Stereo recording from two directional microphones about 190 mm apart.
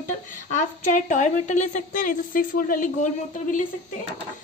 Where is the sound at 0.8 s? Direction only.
40° left (ahead or behind).